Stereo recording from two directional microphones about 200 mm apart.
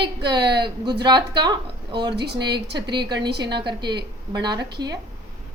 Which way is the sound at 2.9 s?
20° right (ahead or behind).